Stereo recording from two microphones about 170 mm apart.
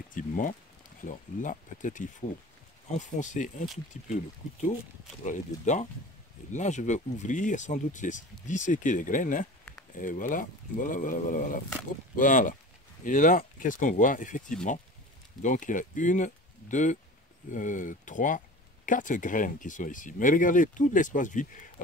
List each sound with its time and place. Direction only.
0.1 s speech: 50° left (ahead or behind)
5.2 s speech: 45° left (ahead or behind)